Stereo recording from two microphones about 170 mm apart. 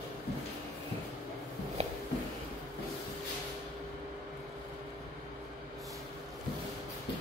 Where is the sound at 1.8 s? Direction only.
40° right (ahead or behind).